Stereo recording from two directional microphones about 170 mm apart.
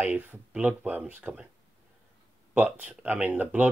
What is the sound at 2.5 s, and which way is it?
Speech, 10° right (ahead or behind).